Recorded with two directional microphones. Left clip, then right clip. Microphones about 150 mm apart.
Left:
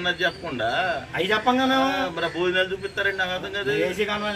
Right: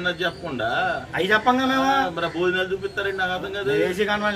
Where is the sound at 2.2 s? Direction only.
15° right (ahead or behind).